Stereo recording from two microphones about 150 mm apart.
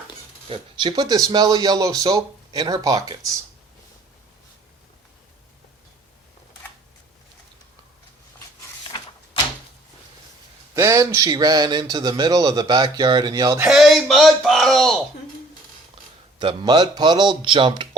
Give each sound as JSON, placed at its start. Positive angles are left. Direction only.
{"t": 0.4, "sound": "speech", "side_deg": -35}
{"t": 10.8, "sound": "speech", "side_deg": -20}
{"t": 13.6, "sound": "speech", "side_deg": 0}
{"t": 16.4, "sound": "speech", "side_deg": -30}